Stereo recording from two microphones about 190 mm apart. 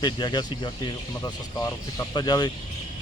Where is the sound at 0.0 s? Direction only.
25° left (ahead or behind).